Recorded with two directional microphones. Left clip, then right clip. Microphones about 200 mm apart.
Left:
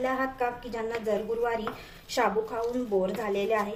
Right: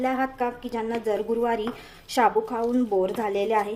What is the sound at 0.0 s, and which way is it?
Speech, 45° right (ahead or behind).